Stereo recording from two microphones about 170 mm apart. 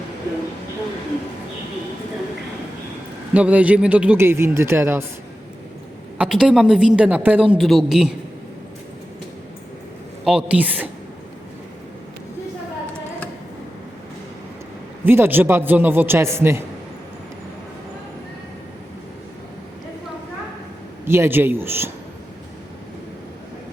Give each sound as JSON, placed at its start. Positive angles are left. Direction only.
{"t": 3.3, "sound": "speech", "side_deg": -10}
{"t": 6.1, "sound": "a woman's voice", "side_deg": -5}
{"t": 10.2, "sound": "speech", "side_deg": -5}
{"t": 15.0, "sound": "speech", "side_deg": -10}
{"t": 21.1, "sound": "speech", "side_deg": -15}